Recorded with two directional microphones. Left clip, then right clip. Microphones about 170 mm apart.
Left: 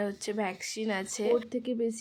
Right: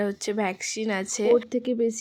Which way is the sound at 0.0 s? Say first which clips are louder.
Right 6 dB; 25° right (ahead or behind).